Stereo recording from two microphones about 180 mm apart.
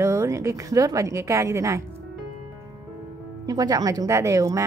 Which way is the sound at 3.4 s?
20° right (ahead or behind).